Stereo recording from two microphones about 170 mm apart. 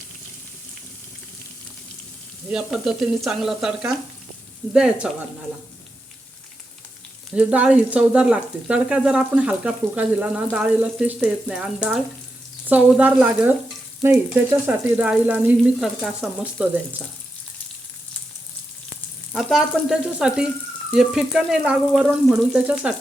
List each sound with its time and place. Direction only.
2.5 s speech: 5° right (ahead or behind)
7.3 s speech: 5° right (ahead or behind)
14.7 s speech: 10° right (ahead or behind)
19.3 s speech: centre (ahead or behind)